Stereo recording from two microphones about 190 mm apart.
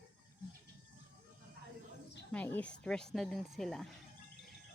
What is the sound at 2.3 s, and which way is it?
Speech, 10° left (ahead or behind).